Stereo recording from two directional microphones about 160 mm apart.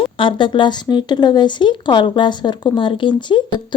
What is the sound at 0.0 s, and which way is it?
Speech, 30° left (ahead or behind).